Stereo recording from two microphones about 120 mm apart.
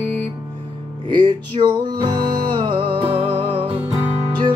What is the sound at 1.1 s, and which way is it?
Music, 40° right (ahead or behind).